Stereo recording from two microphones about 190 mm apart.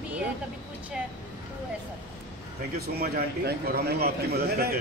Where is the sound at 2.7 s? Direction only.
55° right (ahead or behind).